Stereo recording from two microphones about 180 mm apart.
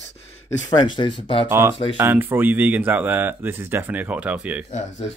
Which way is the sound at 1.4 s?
15° right (ahead or behind).